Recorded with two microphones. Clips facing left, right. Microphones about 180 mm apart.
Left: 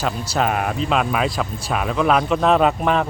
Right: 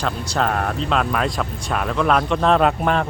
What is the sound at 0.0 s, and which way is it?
Speech, 5° left (ahead or behind).